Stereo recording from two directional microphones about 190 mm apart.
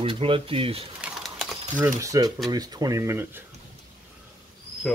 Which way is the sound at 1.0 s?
5° right (ahead or behind).